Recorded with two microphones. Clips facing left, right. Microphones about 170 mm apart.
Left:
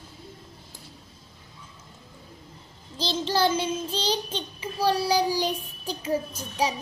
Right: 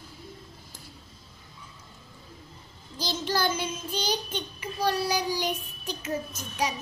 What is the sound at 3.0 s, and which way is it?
Child singing, 30° left (ahead or behind).